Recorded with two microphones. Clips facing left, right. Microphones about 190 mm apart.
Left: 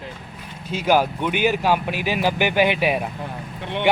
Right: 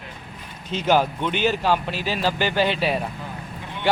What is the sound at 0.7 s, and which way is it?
A man's voice, 10° left (ahead or behind).